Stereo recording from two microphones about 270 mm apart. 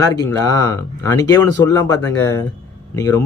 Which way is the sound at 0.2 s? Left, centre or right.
Centre.